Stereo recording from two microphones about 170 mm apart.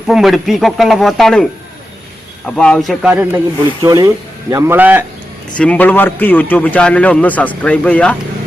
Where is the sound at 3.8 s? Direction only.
20° right (ahead or behind).